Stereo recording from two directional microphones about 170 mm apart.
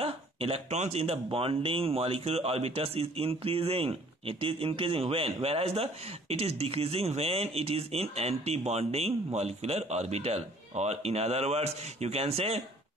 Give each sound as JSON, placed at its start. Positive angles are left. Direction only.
{"t": 0.0, "sound": "speech", "side_deg": -35}